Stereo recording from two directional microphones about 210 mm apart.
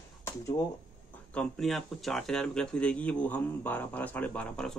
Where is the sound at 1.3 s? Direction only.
Centre (ahead or behind).